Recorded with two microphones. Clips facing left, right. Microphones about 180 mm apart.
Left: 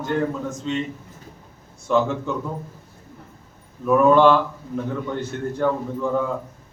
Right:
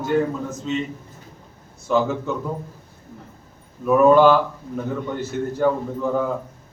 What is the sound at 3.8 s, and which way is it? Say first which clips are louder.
A man's voice: right 1 dB; 5° right (ahead or behind).